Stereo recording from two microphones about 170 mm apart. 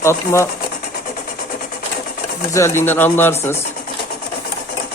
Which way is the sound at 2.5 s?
15° left (ahead or behind).